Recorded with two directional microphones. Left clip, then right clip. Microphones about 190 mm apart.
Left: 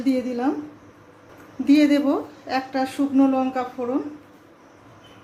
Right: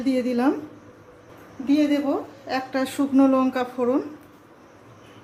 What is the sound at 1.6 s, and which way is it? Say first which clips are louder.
Speech: left 4 dB; 35° left (ahead or behind).